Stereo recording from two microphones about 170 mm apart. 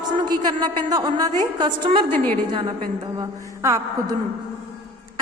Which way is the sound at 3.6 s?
15° right (ahead or behind).